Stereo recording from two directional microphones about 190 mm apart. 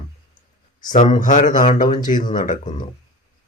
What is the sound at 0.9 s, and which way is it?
Speech, 40° left (ahead or behind).